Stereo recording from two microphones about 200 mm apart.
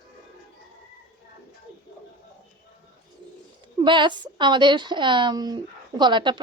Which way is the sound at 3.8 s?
25° right (ahead or behind).